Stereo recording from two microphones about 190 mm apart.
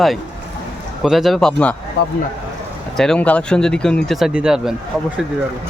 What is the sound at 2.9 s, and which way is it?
Speech, 5° left (ahead or behind).